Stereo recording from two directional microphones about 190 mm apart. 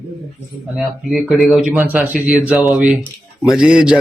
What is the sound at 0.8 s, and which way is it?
Speech, centre (ahead or behind).